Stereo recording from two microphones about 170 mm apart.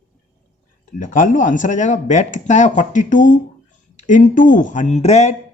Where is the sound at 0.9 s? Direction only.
50° left (ahead or behind).